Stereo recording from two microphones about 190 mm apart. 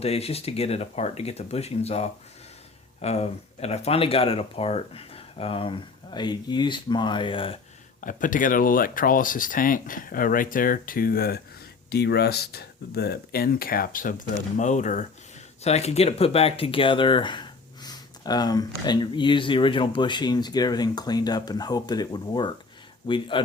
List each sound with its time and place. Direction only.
0.0 s speech: 30° left (ahead or behind)
8.0 s speech: 45° left (ahead or behind); by 23.4 s 25° left (ahead or behind)